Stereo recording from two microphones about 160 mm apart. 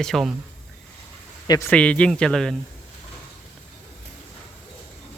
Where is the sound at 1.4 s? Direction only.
25° left (ahead or behind).